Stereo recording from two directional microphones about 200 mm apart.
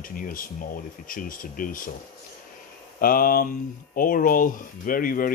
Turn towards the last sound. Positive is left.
turn(degrees=45)  # may be behind; listen again after turning